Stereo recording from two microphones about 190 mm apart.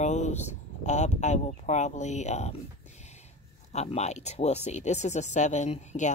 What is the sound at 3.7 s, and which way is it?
Speech, 35° left (ahead or behind).